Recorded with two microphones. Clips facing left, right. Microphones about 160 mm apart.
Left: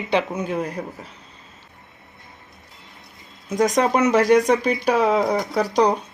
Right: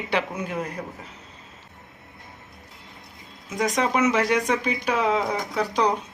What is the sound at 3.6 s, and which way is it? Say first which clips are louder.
Speech: left 4 dB; 45° left (ahead or behind).